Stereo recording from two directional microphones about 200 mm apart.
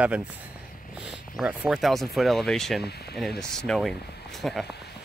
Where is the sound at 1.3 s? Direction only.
5° right (ahead or behind).